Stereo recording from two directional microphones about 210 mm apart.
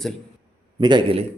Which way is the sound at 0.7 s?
20° right (ahead or behind).